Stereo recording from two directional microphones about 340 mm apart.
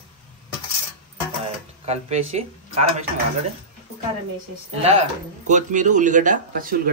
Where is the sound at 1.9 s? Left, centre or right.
Centre.